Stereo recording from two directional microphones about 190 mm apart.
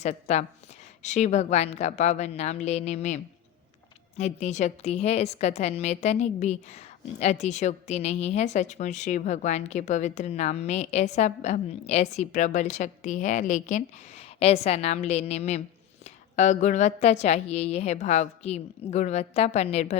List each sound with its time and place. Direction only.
0.0 s a woman's voice: 35° left (ahead or behind)
4.2 s a woman's voice: 35° left (ahead or behind)